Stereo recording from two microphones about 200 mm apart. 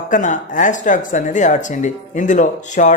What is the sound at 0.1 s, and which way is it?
Speech, 40° left (ahead or behind).